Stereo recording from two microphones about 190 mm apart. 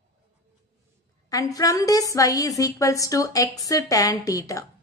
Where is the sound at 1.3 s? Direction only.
20° left (ahead or behind).